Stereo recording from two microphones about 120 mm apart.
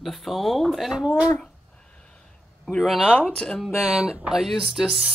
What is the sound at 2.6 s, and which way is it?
Speech, centre (ahead or behind).